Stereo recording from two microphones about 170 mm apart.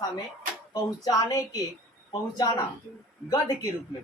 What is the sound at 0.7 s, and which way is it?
A woman's voice, 20° left (ahead or behind).